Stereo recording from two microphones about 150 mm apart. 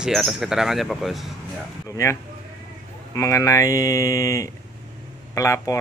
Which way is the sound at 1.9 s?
20° left (ahead or behind).